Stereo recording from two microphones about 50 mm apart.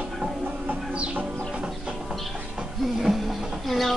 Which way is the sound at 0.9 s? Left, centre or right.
Right.